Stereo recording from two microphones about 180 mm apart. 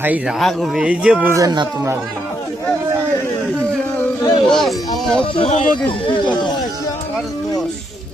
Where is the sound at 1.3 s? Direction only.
20° right (ahead or behind).